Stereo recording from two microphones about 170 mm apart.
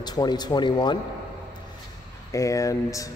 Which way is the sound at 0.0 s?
25° left (ahead or behind).